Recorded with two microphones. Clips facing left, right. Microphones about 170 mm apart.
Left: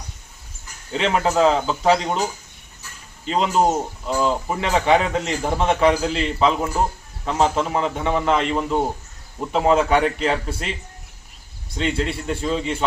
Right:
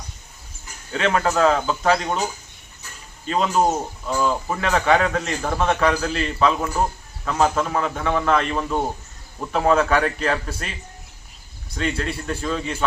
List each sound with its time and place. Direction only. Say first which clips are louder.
0.9 s speech: left 1 dB; 20° left (ahead or behind)
3.2 s speech: left 1 dB; 20° left (ahead or behind)
11.8 s speech: left 2 dB; 20° left (ahead or behind)